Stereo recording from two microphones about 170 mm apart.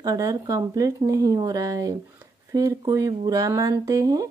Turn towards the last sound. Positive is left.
turn(degrees=-20)  # may be behind; listen again after turning